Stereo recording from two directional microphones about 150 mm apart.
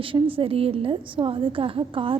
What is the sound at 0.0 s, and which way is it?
A woman's voice, 35° right (ahead or behind).